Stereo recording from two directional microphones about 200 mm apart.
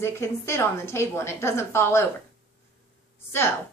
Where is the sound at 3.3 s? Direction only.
10° left (ahead or behind).